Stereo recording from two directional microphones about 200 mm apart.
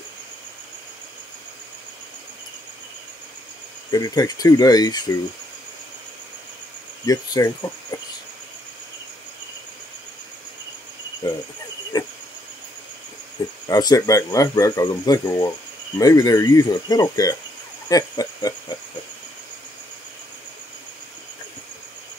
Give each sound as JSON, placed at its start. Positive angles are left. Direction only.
{"t": 3.9, "sound": "speech", "side_deg": 20}
{"t": 7.1, "sound": "speech", "side_deg": 15}
{"t": 11.9, "sound": "a sound", "side_deg": 20}
{"t": 13.7, "sound": "speech", "side_deg": 20}